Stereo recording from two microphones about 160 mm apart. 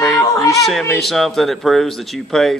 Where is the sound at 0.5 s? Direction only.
Centre (ahead or behind).